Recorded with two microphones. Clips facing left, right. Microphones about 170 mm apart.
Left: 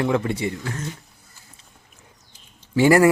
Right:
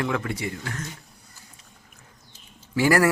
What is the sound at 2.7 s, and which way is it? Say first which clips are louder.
Speech: left 5 dB; 25° left (ahead or behind).